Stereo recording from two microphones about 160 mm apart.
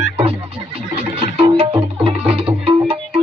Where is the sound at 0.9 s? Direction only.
35° right (ahead or behind).